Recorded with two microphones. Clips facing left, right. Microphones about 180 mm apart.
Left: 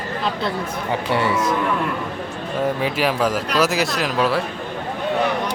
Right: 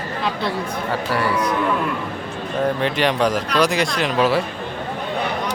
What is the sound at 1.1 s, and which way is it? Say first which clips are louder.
Speech: left 1 dB; 25° left (ahead or behind).